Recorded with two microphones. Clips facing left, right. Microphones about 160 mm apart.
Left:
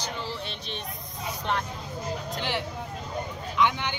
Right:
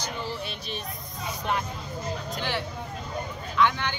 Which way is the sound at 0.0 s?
15° right (ahead or behind).